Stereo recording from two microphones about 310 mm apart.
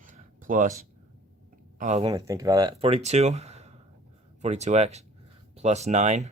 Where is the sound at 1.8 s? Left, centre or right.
Right.